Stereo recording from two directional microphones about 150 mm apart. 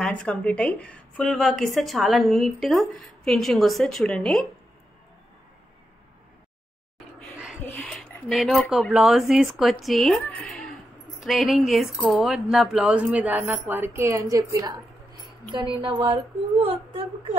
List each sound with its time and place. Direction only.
0.0 s speech: 5° left (ahead or behind)
7.6 s speech: 10° left (ahead or behind); by 14.8 s 25° right (ahead or behind)
15.5 s a woman's voice: 35° right (ahead or behind)